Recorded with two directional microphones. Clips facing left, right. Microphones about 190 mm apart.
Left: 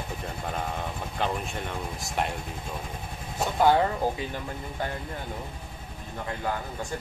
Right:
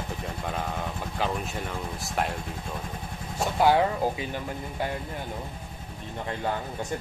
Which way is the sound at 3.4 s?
10° right (ahead or behind).